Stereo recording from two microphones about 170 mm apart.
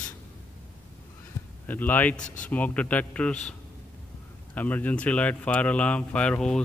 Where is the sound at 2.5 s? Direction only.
10° left (ahead or behind).